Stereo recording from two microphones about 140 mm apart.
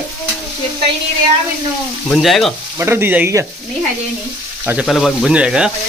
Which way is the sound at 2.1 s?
Centre (ahead or behind).